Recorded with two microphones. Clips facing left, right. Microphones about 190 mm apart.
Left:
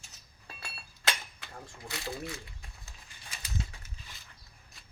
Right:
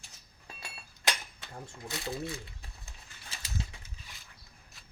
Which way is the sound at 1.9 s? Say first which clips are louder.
Right 2 dB; 20° right (ahead or behind).